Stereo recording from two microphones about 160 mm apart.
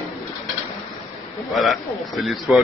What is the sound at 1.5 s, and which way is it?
Speech, centre (ahead or behind).